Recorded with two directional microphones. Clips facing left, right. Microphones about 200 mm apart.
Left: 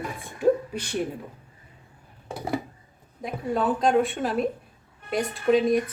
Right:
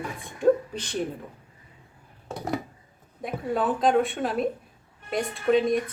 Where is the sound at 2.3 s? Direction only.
5° left (ahead or behind).